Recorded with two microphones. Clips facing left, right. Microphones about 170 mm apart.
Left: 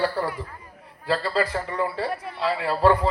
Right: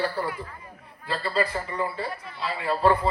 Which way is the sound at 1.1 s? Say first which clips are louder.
Left 3 dB; 90° left.